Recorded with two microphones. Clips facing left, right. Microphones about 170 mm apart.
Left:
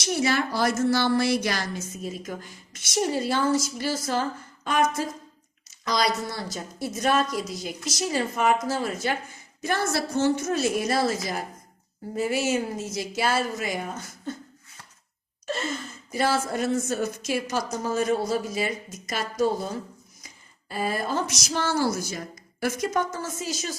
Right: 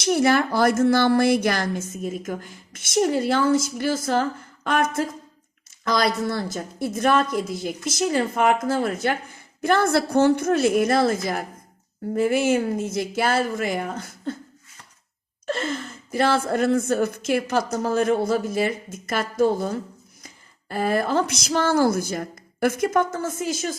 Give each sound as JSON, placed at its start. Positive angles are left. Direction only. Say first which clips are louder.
{"t": 0.0, "sound": "a woman's voice", "louder": "right 6 dB", "side_deg": -55}
{"t": 15.4, "sound": "speech", "louder": "right 4 dB", "side_deg": -55}